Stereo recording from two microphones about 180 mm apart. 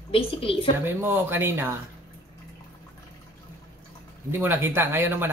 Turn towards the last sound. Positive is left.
turn(degrees=-10)  # may be behind; listen again after turning